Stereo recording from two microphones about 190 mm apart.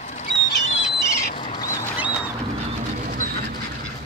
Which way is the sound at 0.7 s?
35° left (ahead or behind).